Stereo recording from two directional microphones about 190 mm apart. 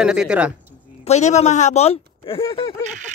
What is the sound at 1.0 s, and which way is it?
Speech, 35° left (ahead or behind).